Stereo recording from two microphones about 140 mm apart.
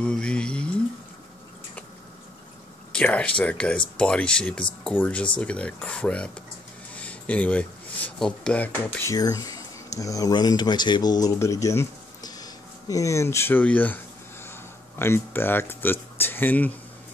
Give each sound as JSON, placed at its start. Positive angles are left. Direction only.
{"t": 0.0, "sound": "a sound", "side_deg": 5}
{"t": 2.9, "sound": "speech", "side_deg": 10}
{"t": 9.1, "sound": "speech", "side_deg": 25}